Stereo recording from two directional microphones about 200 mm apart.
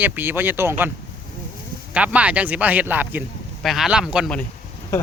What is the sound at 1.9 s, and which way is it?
Speech, 5° right (ahead or behind).